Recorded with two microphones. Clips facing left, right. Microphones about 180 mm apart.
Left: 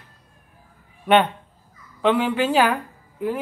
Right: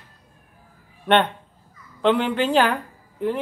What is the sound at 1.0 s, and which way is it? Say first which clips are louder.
A woman's voice: left 1 dB; 5° left (ahead or behind).